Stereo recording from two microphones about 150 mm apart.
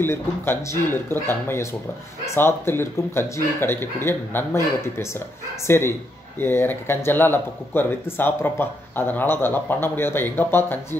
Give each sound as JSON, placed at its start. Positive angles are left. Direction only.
{"t": 0.0, "sound": "speech", "side_deg": 15}